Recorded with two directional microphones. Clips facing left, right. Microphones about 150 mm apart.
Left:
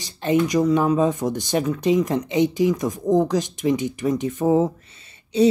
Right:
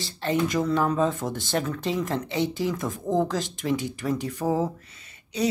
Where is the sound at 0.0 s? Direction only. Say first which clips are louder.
Left 5 dB; 15° left (ahead or behind).